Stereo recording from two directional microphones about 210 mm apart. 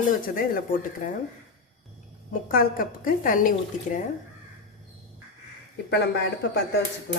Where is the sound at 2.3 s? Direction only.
40° left (ahead or behind).